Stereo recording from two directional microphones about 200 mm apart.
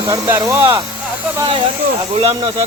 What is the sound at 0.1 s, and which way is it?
Speech, 15° right (ahead or behind).